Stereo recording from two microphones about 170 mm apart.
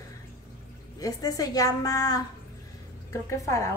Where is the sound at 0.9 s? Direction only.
20° left (ahead or behind).